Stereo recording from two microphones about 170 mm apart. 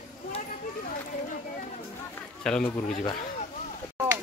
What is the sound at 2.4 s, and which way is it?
Speech, 5° left (ahead or behind).